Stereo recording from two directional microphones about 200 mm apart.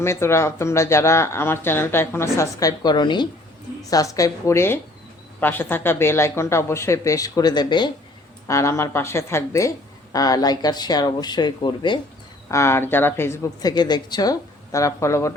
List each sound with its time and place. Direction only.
0.0 s a woman's voice: 15° left (ahead or behind)